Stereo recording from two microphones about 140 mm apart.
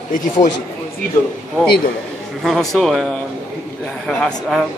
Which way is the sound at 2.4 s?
Centre (ahead or behind).